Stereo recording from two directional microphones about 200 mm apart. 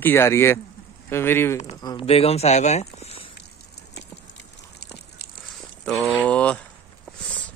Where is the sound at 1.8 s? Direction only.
25° left (ahead or behind).